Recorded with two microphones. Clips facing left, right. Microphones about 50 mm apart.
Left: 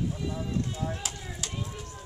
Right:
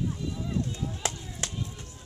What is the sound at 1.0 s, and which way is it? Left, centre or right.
Chop, right.